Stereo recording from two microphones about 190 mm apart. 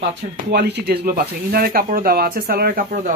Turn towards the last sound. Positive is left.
turn(degrees=-45)  # may be behind; listen again after turning